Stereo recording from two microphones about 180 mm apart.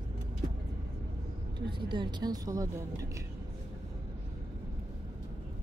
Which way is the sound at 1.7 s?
25° right (ahead or behind).